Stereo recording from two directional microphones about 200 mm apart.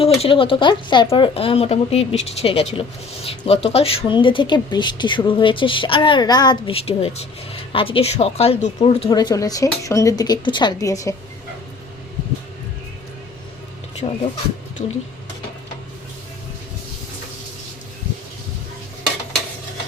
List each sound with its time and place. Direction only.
0.0 s speech: 25° left (ahead or behind)
9.0 s speech: 20° left (ahead or behind)
14.0 s speech: 35° left (ahead or behind)